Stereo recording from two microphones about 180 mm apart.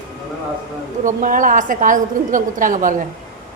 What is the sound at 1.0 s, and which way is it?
A woman's voice, 50° right (ahead or behind).